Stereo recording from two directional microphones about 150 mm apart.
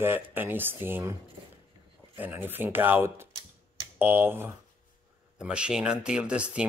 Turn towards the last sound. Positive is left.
turn(degrees=-10)  # may be behind; listen again after turning